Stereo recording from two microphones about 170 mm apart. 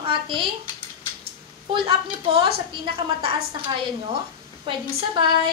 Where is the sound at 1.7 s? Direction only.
30° right (ahead or behind).